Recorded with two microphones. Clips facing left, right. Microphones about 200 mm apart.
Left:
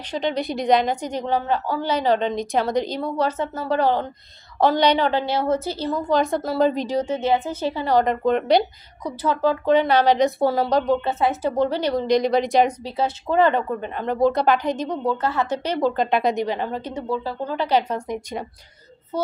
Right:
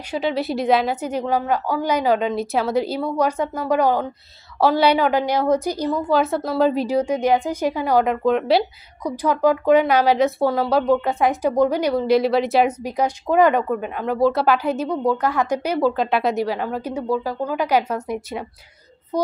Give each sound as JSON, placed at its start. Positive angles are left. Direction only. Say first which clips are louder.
{"t": 0.0, "sound": "a woman's voice", "louder": "right 2 dB", "side_deg": -5}